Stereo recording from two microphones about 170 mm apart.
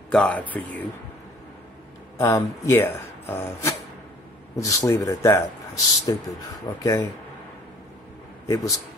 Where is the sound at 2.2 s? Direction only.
20° left (ahead or behind).